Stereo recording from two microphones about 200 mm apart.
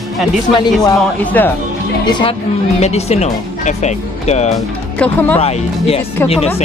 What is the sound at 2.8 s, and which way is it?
Speech, 30° left (ahead or behind).